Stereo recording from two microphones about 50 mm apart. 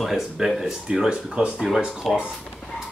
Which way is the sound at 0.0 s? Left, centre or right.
Centre.